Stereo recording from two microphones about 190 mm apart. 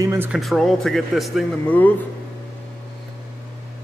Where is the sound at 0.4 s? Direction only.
Centre (ahead or behind).